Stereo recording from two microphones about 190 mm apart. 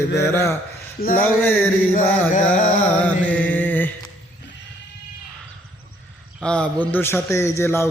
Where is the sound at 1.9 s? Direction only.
40° left (ahead or behind).